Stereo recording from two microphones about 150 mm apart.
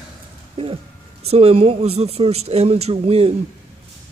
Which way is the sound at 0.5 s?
40° right (ahead or behind).